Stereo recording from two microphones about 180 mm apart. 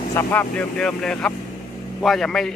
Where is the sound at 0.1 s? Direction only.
10° left (ahead or behind).